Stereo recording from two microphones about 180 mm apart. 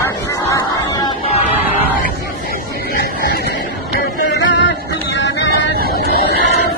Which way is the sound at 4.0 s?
75° left (ahead or behind).